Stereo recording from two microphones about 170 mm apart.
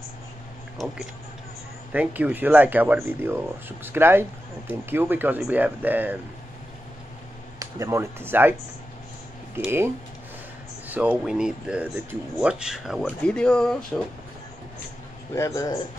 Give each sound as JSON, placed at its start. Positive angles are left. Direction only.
{"t": 1.9, "sound": "speech", "side_deg": -10}
{"t": 7.5, "sound": "speech", "side_deg": -15}
{"t": 10.9, "sound": "speech", "side_deg": -5}
{"t": 15.3, "sound": "a man's voice", "side_deg": 20}